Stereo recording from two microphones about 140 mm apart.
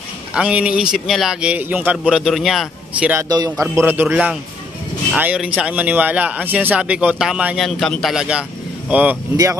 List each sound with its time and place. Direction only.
0.3 s speech: 5° right (ahead or behind)
3.3 s a man's voice: 25° right (ahead or behind)
3.7 s a man's voice: 15° right (ahead or behind)